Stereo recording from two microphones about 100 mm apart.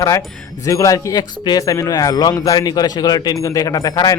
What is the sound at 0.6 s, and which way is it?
Speech, 35° left (ahead or behind).